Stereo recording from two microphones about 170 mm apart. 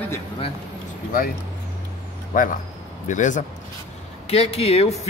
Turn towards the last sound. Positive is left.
turn(degrees=35)  # may be behind; listen again after turning